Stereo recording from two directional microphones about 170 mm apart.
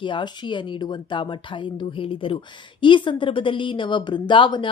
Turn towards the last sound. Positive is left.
turn(degrees=30)  # may be behind; listen again after turning